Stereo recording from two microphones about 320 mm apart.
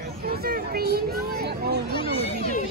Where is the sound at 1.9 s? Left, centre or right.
Centre.